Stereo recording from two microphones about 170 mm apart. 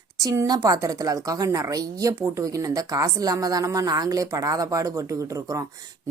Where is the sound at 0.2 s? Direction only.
20° right (ahead or behind).